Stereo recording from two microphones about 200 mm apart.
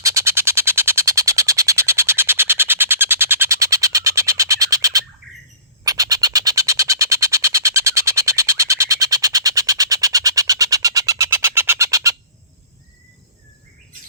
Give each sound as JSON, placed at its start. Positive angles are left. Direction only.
{"t": 0.0, "sound": "music", "side_deg": -15}